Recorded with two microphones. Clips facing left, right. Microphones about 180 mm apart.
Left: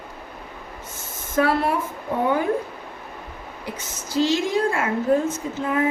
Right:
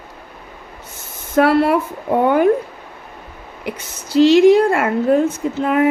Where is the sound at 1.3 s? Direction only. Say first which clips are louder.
Right 7 dB; 70° right (ahead or behind).